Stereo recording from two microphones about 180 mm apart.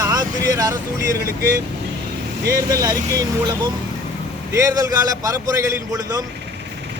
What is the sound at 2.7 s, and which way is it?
Speech, 20° right (ahead or behind).